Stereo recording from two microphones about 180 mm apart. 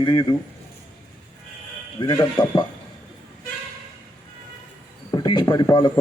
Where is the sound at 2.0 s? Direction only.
25° left (ahead or behind).